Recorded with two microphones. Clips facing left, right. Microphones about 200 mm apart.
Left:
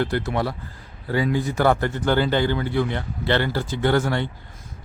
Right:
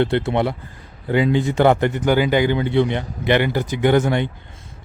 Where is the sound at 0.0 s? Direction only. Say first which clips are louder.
Right 5 dB; 25° right (ahead or behind).